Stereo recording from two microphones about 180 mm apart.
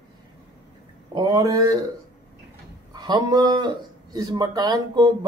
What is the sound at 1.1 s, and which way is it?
Speech, 20° right (ahead or behind).